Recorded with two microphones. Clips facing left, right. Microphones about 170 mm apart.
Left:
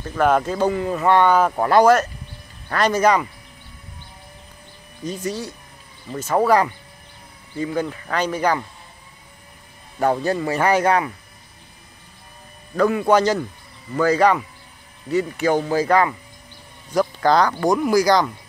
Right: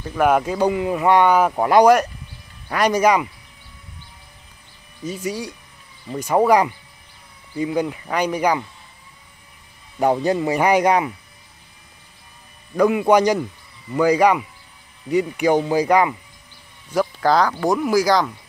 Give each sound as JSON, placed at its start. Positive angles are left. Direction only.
{"t": 0.0, "sound": "speech", "side_deg": -10}
{"t": 5.0, "sound": "speech", "side_deg": -10}
{"t": 9.9, "sound": "speech", "side_deg": -15}
{"t": 12.7, "sound": "speech", "side_deg": -15}
{"t": 16.9, "sound": "speech", "side_deg": -5}